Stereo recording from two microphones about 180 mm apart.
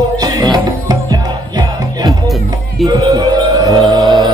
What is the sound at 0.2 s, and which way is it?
Music, 20° right (ahead or behind).